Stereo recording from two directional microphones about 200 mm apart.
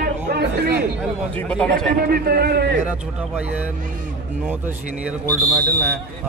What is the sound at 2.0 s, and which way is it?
Speech, 50° right (ahead or behind).